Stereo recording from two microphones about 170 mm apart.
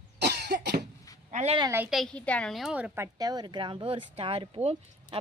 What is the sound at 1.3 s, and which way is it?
Speech, 40° right (ahead or behind).